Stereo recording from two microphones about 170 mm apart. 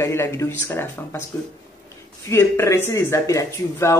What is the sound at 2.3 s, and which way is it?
Speech, 15° left (ahead or behind).